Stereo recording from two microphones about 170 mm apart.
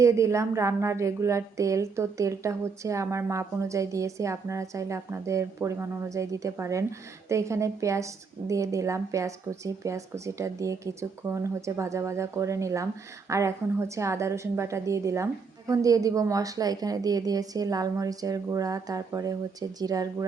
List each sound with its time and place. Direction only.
0.0 s a woman's voice: 15° right (ahead or behind)